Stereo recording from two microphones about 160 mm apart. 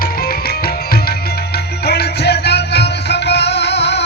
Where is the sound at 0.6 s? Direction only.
75° left (ahead or behind).